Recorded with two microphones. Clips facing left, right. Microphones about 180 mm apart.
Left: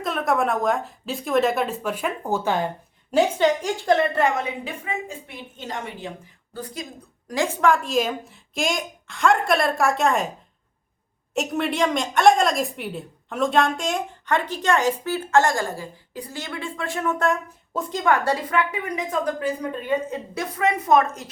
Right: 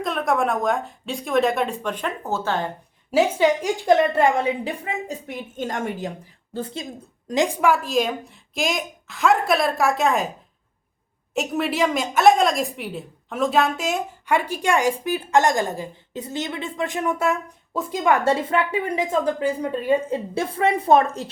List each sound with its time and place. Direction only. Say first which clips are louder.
0.0 s a woman's voice: right 1 dB; centre (ahead or behind)
3.1 s a woman's voice: right 1 dB; 5° right (ahead or behind)
4.1 s a woman's voice: right 3 dB; 30° right (ahead or behind)
5.5 s a woman's voice: right 6 dB; 45° right (ahead or behind)
6.5 s a woman's voice: right 4 dB; 25° right (ahead or behind); by 10.3 s centre (ahead or behind)
11.3 s a woman's voice: right 1 dB; centre (ahead or behind)
18.1 s a woman's voice: right 2 dB; 25° right (ahead or behind)